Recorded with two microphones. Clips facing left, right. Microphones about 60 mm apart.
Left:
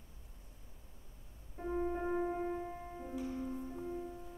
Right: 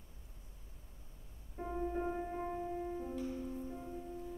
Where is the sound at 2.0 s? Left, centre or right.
Centre.